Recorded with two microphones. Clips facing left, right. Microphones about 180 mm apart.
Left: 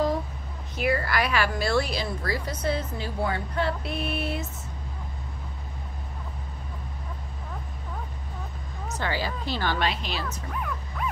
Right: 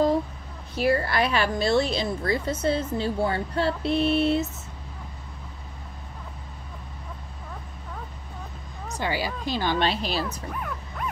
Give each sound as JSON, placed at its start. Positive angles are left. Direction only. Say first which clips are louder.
{"t": 0.7, "sound": "a woman's voice", "louder": "right 3 dB", "side_deg": -30}
{"t": 8.8, "sound": "a woman's voice", "louder": "right 1 dB", "side_deg": -15}
{"t": 9.8, "sound": "a woman's voice", "louder": "right 4 dB", "side_deg": -35}